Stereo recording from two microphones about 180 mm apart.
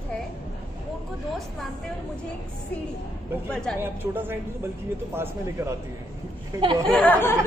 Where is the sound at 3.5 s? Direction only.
5° left (ahead or behind).